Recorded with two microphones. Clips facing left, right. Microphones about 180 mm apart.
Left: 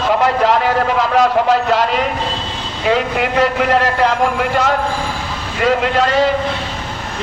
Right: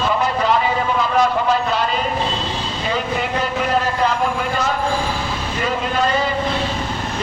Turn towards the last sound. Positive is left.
turn(degrees=90)